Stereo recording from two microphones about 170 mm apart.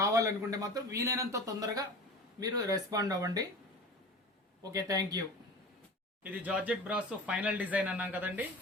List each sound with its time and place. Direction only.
0.0 s a man's voice: 20° right (ahead or behind)
4.6 s a man's voice: 20° right (ahead or behind)
6.4 s speech: 10° right (ahead or behind)